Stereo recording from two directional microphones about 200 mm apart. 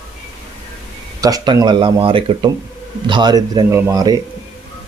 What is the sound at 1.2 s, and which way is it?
Speech, 20° right (ahead or behind).